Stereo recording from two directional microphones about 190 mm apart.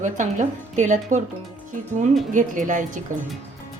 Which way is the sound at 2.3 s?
40° right (ahead or behind).